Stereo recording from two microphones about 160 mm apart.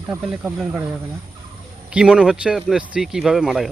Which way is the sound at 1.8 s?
5° right (ahead or behind).